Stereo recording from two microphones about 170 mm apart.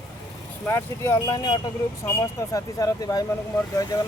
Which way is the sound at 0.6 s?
15° left (ahead or behind).